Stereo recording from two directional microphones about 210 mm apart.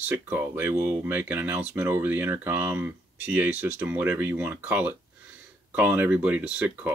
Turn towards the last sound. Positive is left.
turn(degrees=-5)  # may be behind; listen again after turning